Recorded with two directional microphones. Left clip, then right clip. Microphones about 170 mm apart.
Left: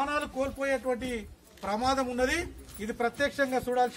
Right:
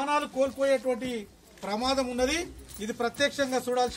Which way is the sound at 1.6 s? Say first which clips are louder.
Even; 5° right (ahead or behind).